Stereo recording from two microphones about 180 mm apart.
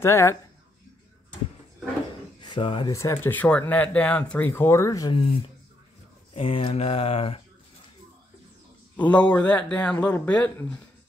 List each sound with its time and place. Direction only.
0.0 s speech: 15° left (ahead or behind)
2.4 s speech: 25° left (ahead or behind)
6.3 s speech: 30° left (ahead or behind)
8.9 s speech: 10° left (ahead or behind)